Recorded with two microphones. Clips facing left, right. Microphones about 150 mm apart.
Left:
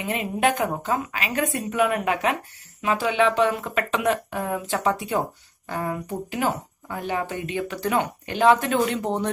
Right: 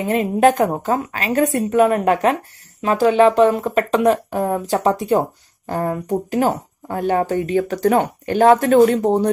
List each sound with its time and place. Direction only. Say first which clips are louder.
0.0 s speech: right 8 dB; 40° right (ahead or behind)